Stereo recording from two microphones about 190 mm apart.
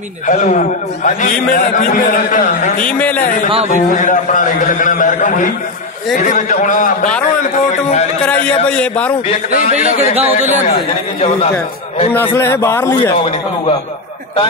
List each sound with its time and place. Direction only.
0.3 s a man's voice: 40° left (ahead or behind)
2.8 s a man's voice: 5° left (ahead or behind)
3.6 s a man's voice: 40° left (ahead or behind)
8.6 s a man's voice: 5° left (ahead or behind)
9.6 s a man's voice: 40° left (ahead or behind)
12.1 s a man's voice: 10° left (ahead or behind)